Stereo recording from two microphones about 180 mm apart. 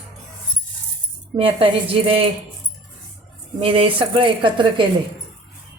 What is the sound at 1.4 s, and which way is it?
Speech, 30° right (ahead or behind).